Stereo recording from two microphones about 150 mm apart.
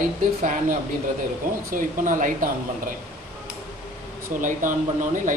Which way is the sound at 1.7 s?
60° right (ahead or behind).